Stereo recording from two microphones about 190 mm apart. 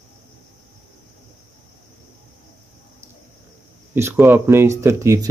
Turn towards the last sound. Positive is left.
turn(degrees=-15)  # may be behind; listen again after turning